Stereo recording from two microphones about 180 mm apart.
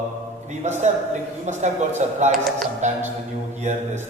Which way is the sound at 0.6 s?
40° right (ahead or behind).